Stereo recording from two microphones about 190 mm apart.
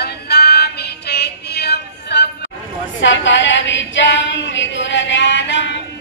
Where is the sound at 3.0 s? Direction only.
75° left (ahead or behind).